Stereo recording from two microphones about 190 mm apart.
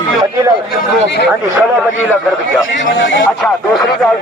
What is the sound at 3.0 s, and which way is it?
Speech, 70° left (ahead or behind).